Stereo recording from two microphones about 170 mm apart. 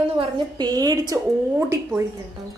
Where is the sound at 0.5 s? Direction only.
25° right (ahead or behind).